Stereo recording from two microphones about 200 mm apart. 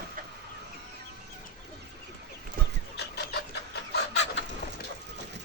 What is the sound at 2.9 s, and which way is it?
Chicken, 55° left (ahead or behind).